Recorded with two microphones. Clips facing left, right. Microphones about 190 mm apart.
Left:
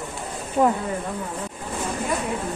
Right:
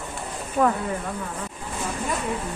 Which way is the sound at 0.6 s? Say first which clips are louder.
Left 2 dB; 25° left (ahead or behind).